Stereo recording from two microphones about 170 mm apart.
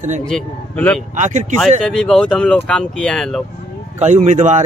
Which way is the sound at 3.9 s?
45° right (ahead or behind).